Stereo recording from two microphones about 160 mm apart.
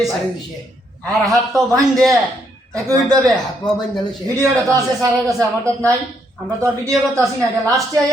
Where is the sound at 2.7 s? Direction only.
20° right (ahead or behind).